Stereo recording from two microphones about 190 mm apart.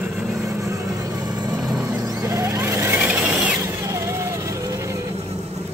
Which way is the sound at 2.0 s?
20° right (ahead or behind).